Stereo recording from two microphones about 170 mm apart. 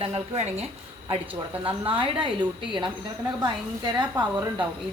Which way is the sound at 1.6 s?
30° right (ahead or behind).